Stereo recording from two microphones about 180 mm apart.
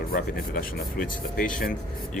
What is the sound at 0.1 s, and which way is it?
Speech, 50° left (ahead or behind).